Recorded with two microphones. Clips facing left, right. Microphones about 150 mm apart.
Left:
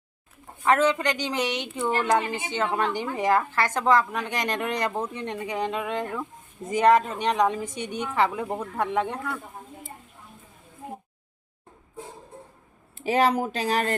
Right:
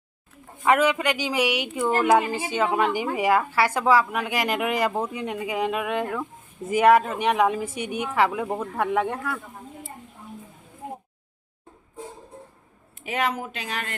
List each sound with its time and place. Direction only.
0.6 s speech: 10° right (ahead or behind)
13.0 s a woman's voice: 35° left (ahead or behind)